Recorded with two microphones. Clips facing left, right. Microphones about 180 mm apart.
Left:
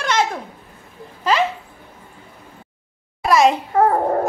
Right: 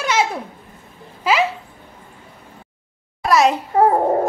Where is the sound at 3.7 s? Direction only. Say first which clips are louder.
Right 4 dB; 15° right (ahead or behind).